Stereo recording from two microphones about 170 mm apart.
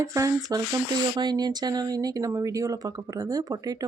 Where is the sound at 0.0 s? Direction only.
20° right (ahead or behind).